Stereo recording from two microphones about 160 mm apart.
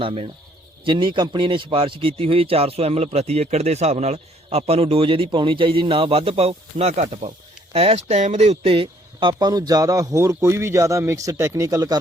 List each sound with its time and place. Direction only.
0.0 s a man's voice: 35° right (ahead or behind)